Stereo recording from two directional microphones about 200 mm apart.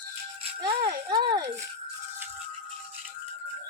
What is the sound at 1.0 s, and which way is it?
Rattle, 20° right (ahead or behind).